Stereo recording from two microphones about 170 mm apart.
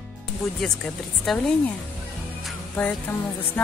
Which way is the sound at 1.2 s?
Centre (ahead or behind).